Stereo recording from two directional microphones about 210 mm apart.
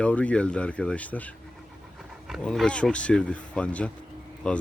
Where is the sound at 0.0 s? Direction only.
5° left (ahead or behind).